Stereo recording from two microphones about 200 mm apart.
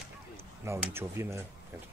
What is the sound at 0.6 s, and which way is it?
Speech, 15° right (ahead or behind).